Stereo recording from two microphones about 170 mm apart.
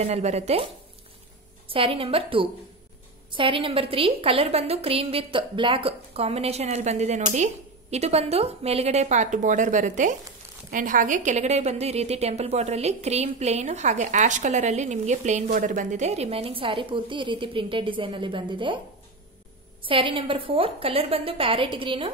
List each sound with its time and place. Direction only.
0.0 s a woman's voice: 40° right (ahead or behind)
1.7 s a woman's voice: 30° right (ahead or behind)
19.8 s a woman's voice: 30° right (ahead or behind)